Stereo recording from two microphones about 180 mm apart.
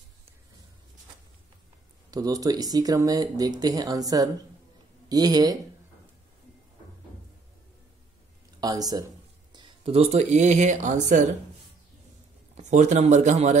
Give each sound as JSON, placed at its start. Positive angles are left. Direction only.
{"t": 2.0, "sound": "speech", "side_deg": -20}
{"t": 8.5, "sound": "speech", "side_deg": -20}
{"t": 12.5, "sound": "speech", "side_deg": -40}